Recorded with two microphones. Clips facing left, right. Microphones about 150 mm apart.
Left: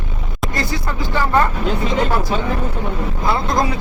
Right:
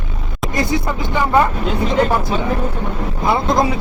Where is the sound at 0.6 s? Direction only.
20° right (ahead or behind).